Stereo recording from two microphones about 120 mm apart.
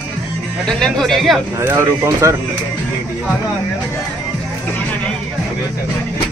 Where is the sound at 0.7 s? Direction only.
5° left (ahead or behind).